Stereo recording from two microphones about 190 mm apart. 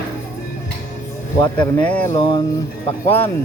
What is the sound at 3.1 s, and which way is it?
Speech, 10° left (ahead or behind).